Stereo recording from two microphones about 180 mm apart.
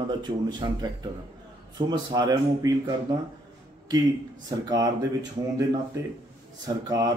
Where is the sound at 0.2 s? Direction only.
25° right (ahead or behind).